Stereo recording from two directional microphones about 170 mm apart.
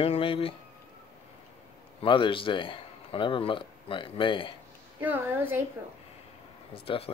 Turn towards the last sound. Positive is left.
turn(degrees=35)  # may be behind; listen again after turning